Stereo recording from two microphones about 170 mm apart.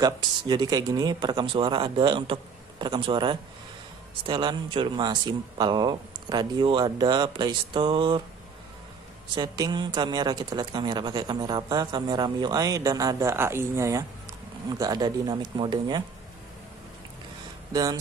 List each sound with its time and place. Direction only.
0.0 s a woman's voice: 25° right (ahead or behind)
9.3 s a woman's voice: 25° right (ahead or behind)